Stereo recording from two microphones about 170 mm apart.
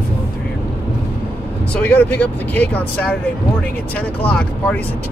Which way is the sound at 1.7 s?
10° left (ahead or behind).